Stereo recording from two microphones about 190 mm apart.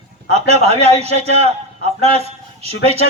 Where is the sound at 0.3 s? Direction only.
35° right (ahead or behind).